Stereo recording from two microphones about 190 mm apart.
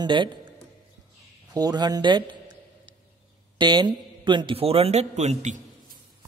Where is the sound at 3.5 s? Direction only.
25° right (ahead or behind); by 5.9 s 40° right (ahead or behind).